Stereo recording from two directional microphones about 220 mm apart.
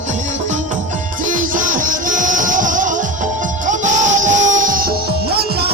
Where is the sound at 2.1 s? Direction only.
35° right (ahead or behind).